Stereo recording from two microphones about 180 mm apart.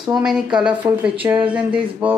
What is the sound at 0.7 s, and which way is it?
Speech, 25° right (ahead or behind).